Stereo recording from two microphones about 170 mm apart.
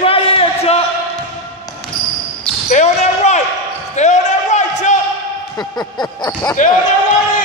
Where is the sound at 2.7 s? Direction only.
40° left (ahead or behind).